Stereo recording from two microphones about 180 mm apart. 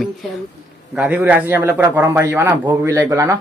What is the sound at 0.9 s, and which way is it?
A man's voice, 10° right (ahead or behind).